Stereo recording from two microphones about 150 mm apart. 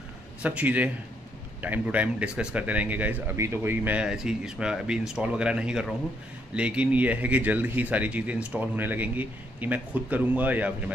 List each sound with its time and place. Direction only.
0.4 s speech: 10° right (ahead or behind)